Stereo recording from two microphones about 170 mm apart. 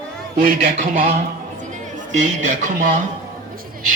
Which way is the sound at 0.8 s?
55° right (ahead or behind).